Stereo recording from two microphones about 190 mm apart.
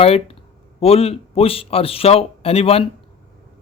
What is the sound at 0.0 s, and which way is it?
A man's voice, 30° left (ahead or behind).